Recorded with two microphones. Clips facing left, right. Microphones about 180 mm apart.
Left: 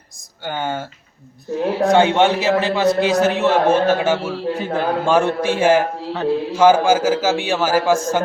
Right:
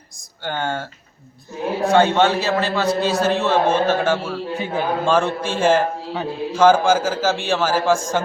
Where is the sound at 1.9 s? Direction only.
15° left (ahead or behind).